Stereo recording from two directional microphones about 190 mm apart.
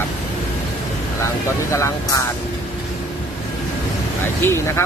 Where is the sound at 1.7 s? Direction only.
15° left (ahead or behind).